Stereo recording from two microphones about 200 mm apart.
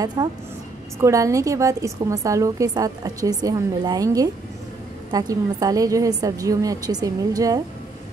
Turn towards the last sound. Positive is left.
turn(degrees=-20)  # may be behind; listen again after turning